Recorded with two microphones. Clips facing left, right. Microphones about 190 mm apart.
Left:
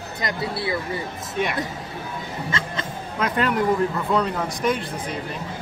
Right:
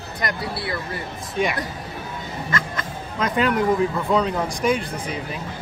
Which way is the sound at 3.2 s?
Centre (ahead or behind).